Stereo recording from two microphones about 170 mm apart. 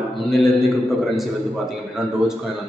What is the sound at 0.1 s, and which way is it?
A man's voice, centre (ahead or behind).